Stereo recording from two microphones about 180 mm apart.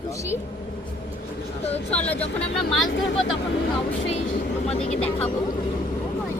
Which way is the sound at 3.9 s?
35° left (ahead or behind).